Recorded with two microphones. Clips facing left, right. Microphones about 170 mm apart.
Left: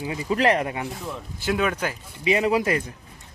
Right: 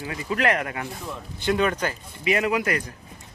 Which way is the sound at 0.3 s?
30° left (ahead or behind).